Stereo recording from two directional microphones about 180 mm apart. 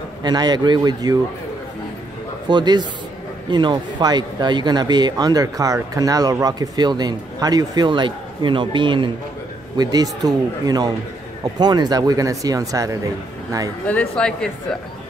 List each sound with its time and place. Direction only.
0.2 s a man's voice: 25° right (ahead or behind)
2.4 s a man's voice: 25° right (ahead or behind)
13.8 s speech: 5° left (ahead or behind)